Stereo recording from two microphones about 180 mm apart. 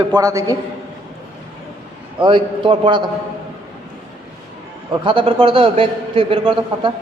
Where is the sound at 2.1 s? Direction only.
25° right (ahead or behind).